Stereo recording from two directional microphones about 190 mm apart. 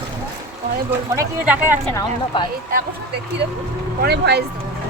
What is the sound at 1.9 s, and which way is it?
Speech, 20° left (ahead or behind).